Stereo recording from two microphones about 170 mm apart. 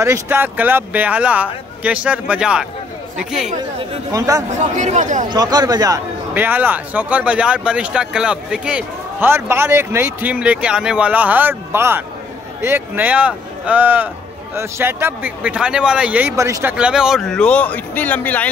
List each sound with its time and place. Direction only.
0.0 s speech: 15° right (ahead or behind)
4.1 s speech: 20° right (ahead or behind)
4.5 s speech: 45° right (ahead or behind)
5.3 s speech: 25° right (ahead or behind)
16.7 s speech: 5° right (ahead or behind)